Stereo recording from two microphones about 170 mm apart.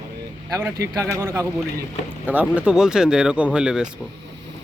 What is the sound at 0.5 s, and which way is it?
A man's voice, 20° right (ahead or behind).